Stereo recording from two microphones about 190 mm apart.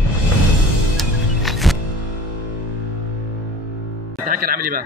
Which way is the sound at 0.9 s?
Centre (ahead or behind).